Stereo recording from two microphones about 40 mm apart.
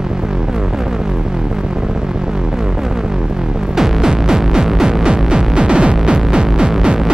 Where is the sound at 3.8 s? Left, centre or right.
Centre.